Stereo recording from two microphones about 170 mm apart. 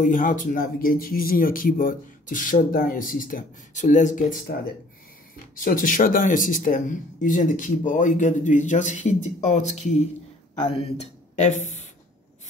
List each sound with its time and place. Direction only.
0.0 s speech: 50° left (ahead or behind)
5.6 s speech: 55° left (ahead or behind)